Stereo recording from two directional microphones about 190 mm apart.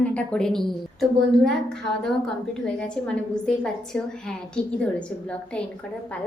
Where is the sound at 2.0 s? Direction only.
5° left (ahead or behind).